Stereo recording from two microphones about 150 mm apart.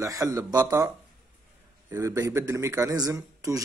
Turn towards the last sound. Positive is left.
turn(degrees=-20)  # may be behind; listen again after turning